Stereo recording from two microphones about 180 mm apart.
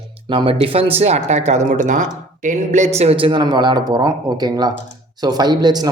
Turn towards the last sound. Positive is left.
turn(degrees=-20)  # may be behind; listen again after turning